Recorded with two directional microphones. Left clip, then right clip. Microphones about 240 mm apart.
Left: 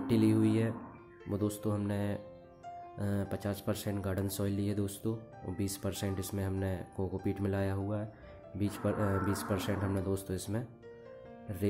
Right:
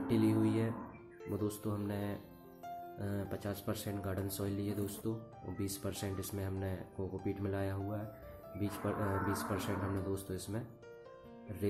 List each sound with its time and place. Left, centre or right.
0.0 s speech: left